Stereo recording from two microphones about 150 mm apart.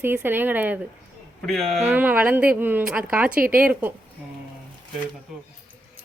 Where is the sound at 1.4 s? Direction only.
Centre (ahead or behind).